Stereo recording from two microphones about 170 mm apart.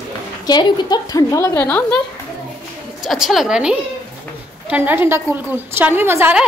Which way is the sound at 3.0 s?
Centre (ahead or behind).